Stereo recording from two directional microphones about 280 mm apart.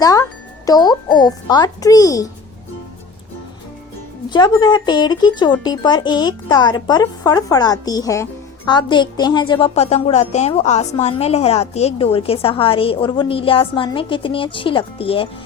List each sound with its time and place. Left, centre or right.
0.0 s speech: centre
4.3 s speech: centre